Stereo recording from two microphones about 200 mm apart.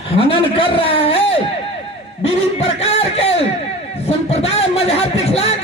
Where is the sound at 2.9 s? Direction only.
30° left (ahead or behind).